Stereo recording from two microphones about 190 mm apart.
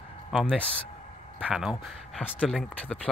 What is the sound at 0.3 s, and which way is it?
Speech, centre (ahead or behind).